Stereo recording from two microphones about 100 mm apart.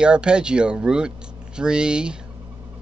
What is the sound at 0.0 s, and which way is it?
Speech, 10° right (ahead or behind).